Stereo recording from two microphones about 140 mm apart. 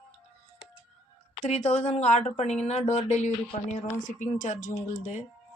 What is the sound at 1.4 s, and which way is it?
Speech, 55° left (ahead or behind).